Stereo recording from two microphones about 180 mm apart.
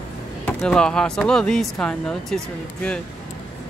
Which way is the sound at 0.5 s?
5° left (ahead or behind).